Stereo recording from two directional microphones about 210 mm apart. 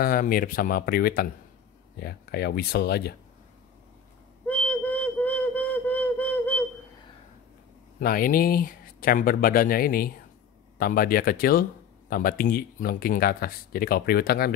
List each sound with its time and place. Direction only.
0.0 s speech: 40° left (ahead or behind)
4.5 s a sound: 5° left (ahead or behind)
8.0 s speech: 40° left (ahead or behind)